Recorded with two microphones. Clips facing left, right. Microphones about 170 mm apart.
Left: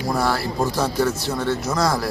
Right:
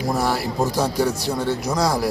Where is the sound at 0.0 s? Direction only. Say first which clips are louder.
Even; 15° right (ahead or behind).